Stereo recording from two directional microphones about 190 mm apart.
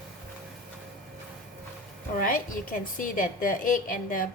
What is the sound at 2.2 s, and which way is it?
A woman's voice, 45° left (ahead or behind).